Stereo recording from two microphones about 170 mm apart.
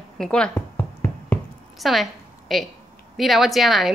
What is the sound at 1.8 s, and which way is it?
A woman's voice, centre (ahead or behind).